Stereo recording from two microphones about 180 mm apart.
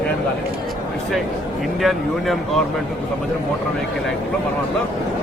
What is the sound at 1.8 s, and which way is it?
Speech, centre (ahead or behind).